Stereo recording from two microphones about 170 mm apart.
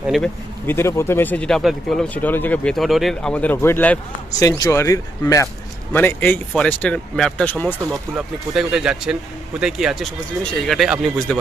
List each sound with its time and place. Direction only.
0.0 s a sound: centre (ahead or behind)
0.7 s speech: 15° left (ahead or behind)
4.4 s speech: 20° left (ahead or behind)
8.5 s speech: 5° right (ahead or behind)